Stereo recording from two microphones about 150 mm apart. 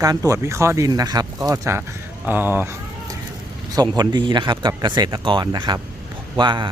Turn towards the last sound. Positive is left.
turn(degrees=-30)  # may be behind; listen again after turning